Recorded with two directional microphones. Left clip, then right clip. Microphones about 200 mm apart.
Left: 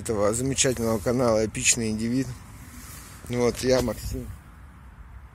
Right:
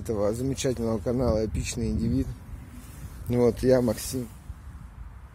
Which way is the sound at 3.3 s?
25° right (ahead or behind).